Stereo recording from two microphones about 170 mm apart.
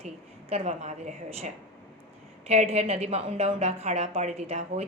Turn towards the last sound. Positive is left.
turn(degrees=-40)  # may be behind; listen again after turning